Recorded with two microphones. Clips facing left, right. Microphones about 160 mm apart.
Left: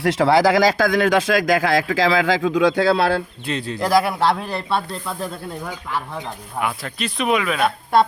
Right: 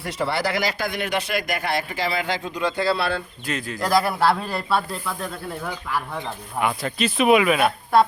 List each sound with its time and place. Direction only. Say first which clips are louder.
0.0 s speech: left 9 dB; 90° left
3.4 s speech: left 3 dB; 30° left (ahead or behind)
3.8 s a man's voice: left 2 dB; 10° left (ahead or behind)
6.1 s speech: even; centre (ahead or behind)